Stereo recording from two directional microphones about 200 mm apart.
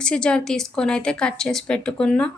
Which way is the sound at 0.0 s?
5° left (ahead or behind).